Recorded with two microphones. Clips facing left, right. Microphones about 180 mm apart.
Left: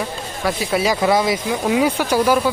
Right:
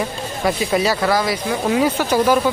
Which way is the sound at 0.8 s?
10° left (ahead or behind).